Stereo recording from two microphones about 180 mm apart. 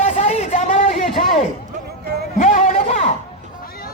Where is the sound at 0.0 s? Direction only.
35° left (ahead or behind).